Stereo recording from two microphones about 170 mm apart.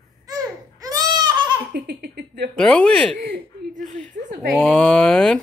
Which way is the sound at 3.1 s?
55° right (ahead or behind).